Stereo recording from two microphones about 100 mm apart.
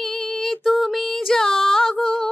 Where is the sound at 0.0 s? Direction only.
5° left (ahead or behind).